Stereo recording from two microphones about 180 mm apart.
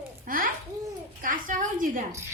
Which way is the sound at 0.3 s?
50° right (ahead or behind).